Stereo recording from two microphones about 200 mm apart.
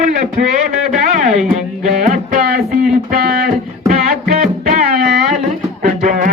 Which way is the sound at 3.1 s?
45° right (ahead or behind).